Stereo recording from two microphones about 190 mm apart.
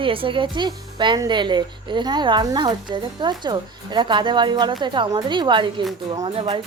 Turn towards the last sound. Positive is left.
turn(degrees=-30)  # may be behind; listen again after turning